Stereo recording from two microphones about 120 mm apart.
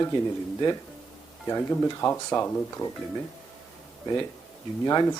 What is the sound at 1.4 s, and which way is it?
Speech, 25° left (ahead or behind).